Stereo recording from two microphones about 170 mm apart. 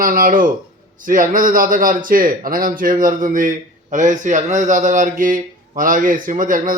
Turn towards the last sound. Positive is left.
turn(degrees=-50)  # may be behind; listen again after turning